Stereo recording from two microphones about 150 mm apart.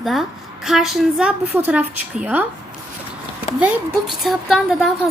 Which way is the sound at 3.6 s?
5° right (ahead or behind).